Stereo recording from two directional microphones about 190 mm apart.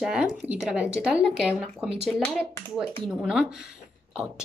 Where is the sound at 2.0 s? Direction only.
10° left (ahead or behind).